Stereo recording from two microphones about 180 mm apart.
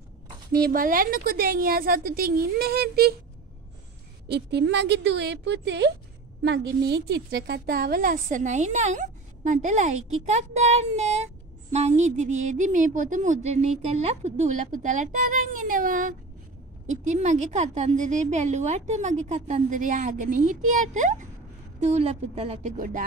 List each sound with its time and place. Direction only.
0.5 s a woman's voice: 55° right (ahead or behind)
4.3 s a woman's voice: 70° right (ahead or behind); by 23.0 s 45° right (ahead or behind)